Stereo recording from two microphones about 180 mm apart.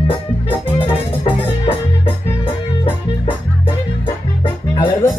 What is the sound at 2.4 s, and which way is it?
Music, 25° left (ahead or behind).